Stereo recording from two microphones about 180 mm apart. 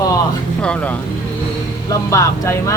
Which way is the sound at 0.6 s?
5° left (ahead or behind).